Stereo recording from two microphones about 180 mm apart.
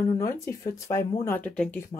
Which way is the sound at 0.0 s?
20° left (ahead or behind).